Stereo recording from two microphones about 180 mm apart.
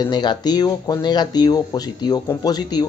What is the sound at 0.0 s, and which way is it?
Speech, 25° left (ahead or behind).